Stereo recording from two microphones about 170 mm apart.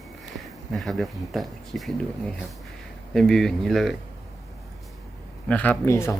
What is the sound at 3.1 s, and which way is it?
Speech, centre (ahead or behind).